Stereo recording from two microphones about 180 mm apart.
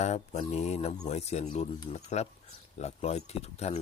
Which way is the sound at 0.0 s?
40° left (ahead or behind).